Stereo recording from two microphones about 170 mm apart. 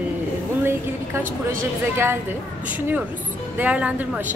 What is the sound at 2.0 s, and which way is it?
A woman's voice, 15° right (ahead or behind).